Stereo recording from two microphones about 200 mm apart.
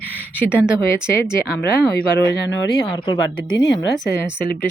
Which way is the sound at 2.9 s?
20° left (ahead or behind).